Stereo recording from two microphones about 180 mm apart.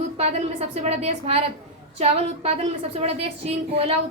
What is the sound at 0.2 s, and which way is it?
A woman's voice, 35° right (ahead or behind).